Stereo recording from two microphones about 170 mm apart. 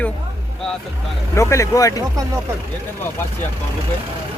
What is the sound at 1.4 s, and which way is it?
Speech, 20° left (ahead or behind).